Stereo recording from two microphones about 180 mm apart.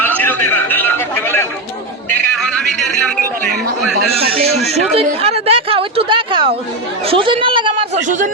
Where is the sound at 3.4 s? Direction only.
65° right (ahead or behind).